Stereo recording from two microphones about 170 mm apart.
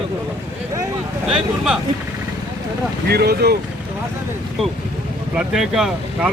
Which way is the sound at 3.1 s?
70° right (ahead or behind).